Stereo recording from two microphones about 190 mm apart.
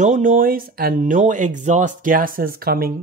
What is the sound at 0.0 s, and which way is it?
Speech, 40° right (ahead or behind).